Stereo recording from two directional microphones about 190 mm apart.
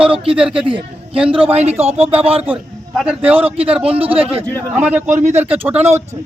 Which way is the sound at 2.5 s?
5° right (ahead or behind).